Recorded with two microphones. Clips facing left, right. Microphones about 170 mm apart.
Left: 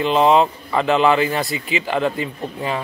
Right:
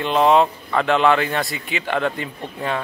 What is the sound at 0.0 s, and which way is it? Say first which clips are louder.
Speech: left 1 dB; centre (ahead or behind).